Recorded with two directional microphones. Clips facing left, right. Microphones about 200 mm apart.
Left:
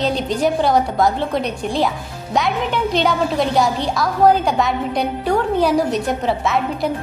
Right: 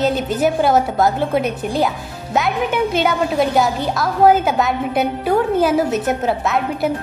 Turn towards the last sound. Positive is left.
turn(degrees=-5)  # may be behind; listen again after turning